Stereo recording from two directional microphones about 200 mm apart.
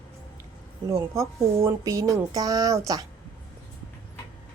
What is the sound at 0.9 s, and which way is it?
Speech, 15° right (ahead or behind).